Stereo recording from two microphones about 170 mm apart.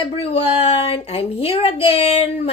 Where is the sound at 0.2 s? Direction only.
35° left (ahead or behind).